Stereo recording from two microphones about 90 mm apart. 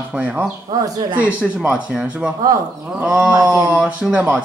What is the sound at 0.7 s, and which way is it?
Speech, 50° right (ahead or behind).